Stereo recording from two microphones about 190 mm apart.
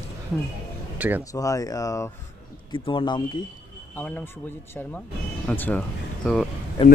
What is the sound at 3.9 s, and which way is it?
Speech, 10° left (ahead or behind).